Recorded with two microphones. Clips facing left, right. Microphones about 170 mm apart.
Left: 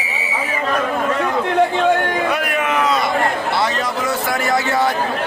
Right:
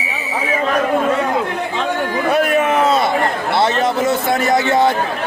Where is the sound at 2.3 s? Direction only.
30° right (ahead or behind).